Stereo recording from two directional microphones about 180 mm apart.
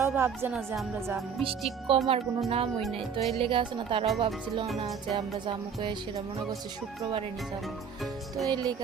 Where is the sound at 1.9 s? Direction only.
30° right (ahead or behind).